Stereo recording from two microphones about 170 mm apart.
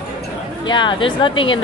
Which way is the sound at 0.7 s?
30° left (ahead or behind).